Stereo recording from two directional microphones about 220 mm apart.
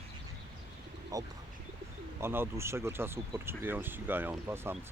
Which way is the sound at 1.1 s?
15° right (ahead or behind).